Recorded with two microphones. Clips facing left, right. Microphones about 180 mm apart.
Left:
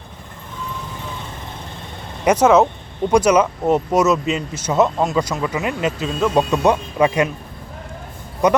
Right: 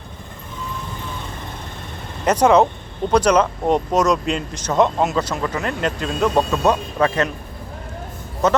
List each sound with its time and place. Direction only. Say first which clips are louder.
2.2 s speech: left 1 dB; 10° left (ahead or behind)
6.5 s speech: left 2 dB; 15° left (ahead or behind)
8.4 s speech: left 2 dB; 15° left (ahead or behind)